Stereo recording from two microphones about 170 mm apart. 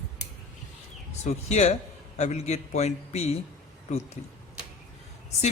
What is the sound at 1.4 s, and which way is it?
A man's voice, 40° left (ahead or behind).